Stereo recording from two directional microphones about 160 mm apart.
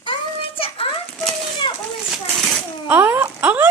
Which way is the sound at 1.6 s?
30° left (ahead or behind).